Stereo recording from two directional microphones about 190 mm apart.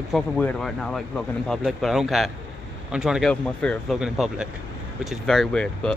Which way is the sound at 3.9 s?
5° right (ahead or behind).